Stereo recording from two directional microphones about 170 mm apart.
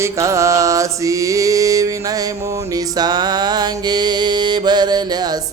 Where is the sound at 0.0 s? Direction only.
15° right (ahead or behind).